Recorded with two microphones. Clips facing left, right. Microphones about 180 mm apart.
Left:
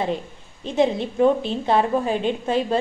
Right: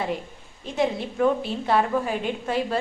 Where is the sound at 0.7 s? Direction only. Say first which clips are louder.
Left 5 dB; 20° left (ahead or behind).